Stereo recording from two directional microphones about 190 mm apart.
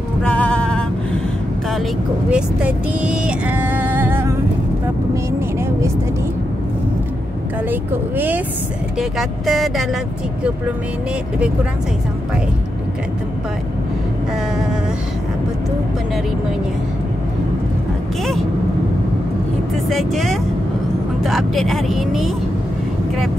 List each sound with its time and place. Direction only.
0.2 s music: 5° left (ahead or behind)
1.7 s vehicle: 5° right (ahead or behind)
7.7 s speech: 10° right (ahead or behind)
9.5 s speech: centre (ahead or behind)
19.9 s speech: centre (ahead or behind)